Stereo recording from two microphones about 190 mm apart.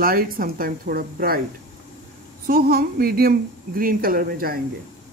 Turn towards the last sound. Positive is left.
turn(degrees=-50)  # may be behind; listen again after turning